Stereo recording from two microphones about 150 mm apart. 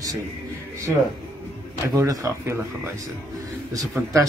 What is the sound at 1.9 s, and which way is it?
Speech, 25° right (ahead or behind).